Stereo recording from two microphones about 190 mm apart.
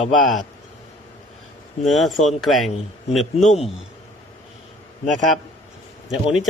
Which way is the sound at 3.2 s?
40° left (ahead or behind).